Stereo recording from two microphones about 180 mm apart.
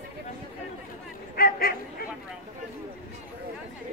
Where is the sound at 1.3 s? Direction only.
55° left (ahead or behind).